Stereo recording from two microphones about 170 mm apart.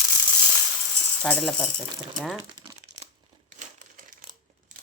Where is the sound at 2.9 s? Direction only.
90° right.